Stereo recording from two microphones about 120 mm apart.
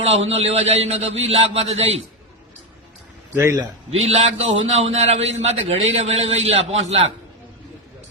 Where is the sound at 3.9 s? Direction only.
60° right (ahead or behind).